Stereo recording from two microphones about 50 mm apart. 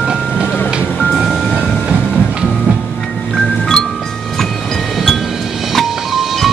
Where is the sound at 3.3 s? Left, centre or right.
Centre.